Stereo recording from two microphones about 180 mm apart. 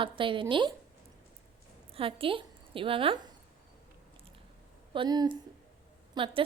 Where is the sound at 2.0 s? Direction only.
30° right (ahead or behind).